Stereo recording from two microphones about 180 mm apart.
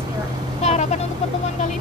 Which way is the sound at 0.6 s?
35° left (ahead or behind).